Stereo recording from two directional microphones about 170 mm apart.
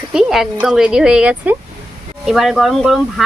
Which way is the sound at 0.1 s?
5° right (ahead or behind).